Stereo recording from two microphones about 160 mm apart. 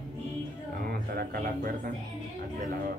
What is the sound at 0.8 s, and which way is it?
A man's voice, 75° right (ahead or behind).